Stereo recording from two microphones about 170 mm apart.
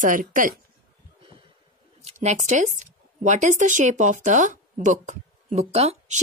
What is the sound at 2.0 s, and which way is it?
Speech, 40° right (ahead or behind).